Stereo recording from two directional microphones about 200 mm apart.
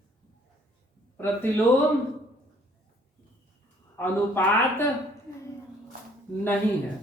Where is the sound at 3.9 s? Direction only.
10° left (ahead or behind).